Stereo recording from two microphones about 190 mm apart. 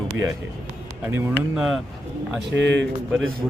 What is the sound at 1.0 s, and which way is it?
Speech, 10° right (ahead or behind).